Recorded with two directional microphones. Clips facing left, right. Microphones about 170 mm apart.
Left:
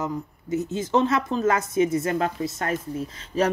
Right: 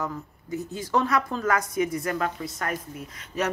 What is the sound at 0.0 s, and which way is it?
Speech, 20° left (ahead or behind).